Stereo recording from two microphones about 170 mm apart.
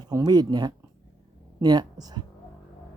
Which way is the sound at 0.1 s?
20° right (ahead or behind).